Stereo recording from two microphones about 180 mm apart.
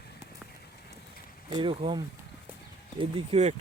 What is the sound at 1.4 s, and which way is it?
Speech, 25° right (ahead or behind).